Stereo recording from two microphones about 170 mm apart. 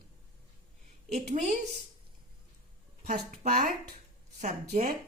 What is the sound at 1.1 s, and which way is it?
Speech, 40° right (ahead or behind).